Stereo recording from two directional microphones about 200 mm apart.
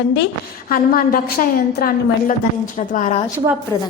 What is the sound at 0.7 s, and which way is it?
A woman's voice, 45° left (ahead or behind).